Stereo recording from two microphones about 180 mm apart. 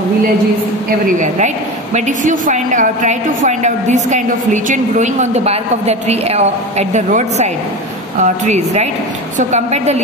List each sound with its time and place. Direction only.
0.8 s a woman's voice: 45° right (ahead or behind)